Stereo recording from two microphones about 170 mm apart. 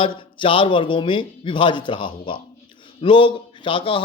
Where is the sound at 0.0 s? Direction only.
30° left (ahead or behind).